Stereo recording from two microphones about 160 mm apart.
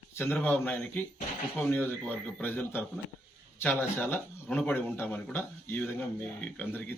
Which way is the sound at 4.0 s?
10° left (ahead or behind).